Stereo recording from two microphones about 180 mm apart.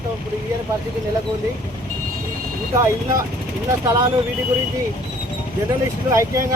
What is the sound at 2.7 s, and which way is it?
Speech, 15° right (ahead or behind).